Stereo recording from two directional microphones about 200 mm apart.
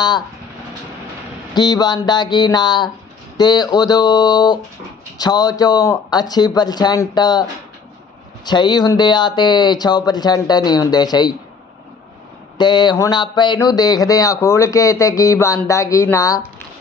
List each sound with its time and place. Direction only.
1.5 s speech: 20° left (ahead or behind)
8.5 s speech: 20° left (ahead or behind)
12.5 s speech: 20° left (ahead or behind)